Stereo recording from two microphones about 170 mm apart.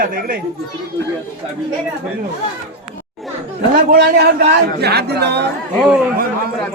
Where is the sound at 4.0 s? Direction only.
60° right (ahead or behind).